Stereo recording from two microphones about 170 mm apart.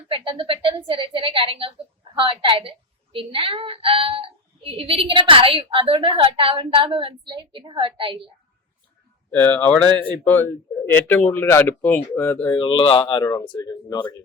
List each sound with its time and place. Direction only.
0.1 s a woman's voice: 30° right (ahead or behind)
9.3 s speech: 10° left (ahead or behind)
12.5 s speech: 30° left (ahead or behind)